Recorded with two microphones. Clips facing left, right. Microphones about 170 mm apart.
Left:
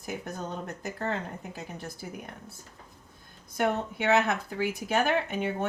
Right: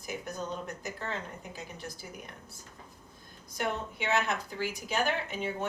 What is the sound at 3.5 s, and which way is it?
A woman's voice, 55° left (ahead or behind).